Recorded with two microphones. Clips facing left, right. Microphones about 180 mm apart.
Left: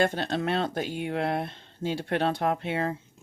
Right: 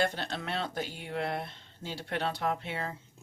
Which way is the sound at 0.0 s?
50° left (ahead or behind).